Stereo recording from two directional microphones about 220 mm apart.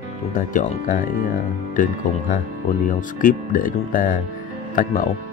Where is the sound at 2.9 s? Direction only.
35° left (ahead or behind).